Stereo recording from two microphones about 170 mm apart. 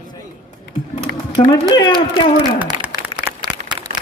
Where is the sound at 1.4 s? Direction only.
35° left (ahead or behind).